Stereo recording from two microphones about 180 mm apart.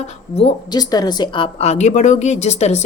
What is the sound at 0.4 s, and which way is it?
A woman's voice, 20° left (ahead or behind).